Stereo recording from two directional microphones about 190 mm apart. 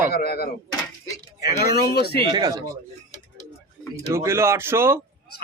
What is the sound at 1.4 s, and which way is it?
Speech, 20° right (ahead or behind).